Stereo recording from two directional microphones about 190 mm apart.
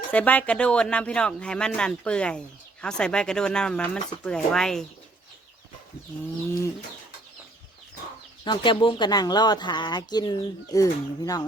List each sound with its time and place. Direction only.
0.1 s speech: 10° left (ahead or behind)
8.4 s speech: 25° left (ahead or behind)